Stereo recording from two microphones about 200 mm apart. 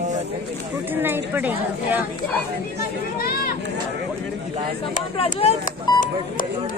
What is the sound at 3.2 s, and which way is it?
Speech, 50° left (ahead or behind).